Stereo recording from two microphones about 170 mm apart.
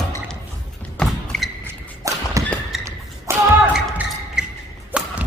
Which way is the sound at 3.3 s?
15° right (ahead or behind).